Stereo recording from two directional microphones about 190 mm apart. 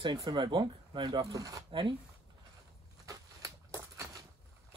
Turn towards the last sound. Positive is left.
turn(degrees=-15)  # may be behind; listen again after turning